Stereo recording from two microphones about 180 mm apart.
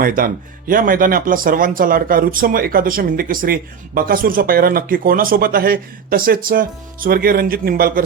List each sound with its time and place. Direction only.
0.0 s speech: 50° right (ahead or behind)